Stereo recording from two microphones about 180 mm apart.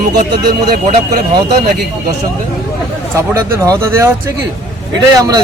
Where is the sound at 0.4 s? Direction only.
55° right (ahead or behind).